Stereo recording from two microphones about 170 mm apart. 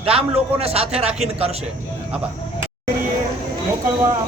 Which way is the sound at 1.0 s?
5° right (ahead or behind).